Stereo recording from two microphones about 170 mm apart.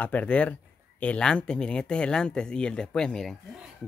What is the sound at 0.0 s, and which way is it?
Speech, 10° left (ahead or behind).